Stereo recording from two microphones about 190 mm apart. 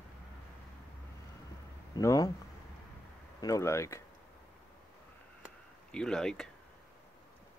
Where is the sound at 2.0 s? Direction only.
15° left (ahead or behind).